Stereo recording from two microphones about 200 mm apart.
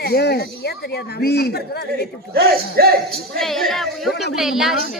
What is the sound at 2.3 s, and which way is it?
Speech, 50° right (ahead or behind).